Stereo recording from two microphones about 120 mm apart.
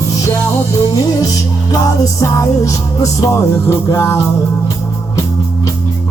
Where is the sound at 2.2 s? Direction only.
25° left (ahead or behind).